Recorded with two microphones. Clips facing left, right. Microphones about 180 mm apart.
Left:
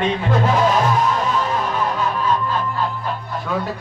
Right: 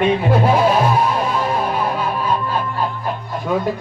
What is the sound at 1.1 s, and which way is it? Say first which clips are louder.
Music: right 1 dB; 10° right (ahead or behind).